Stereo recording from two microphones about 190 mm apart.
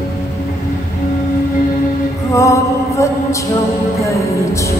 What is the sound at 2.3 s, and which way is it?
Music, 15° left (ahead or behind).